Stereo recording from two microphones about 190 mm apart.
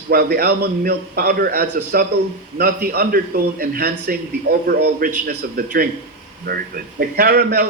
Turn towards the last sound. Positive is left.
turn(degrees=-55)  # may be behind; listen again after turning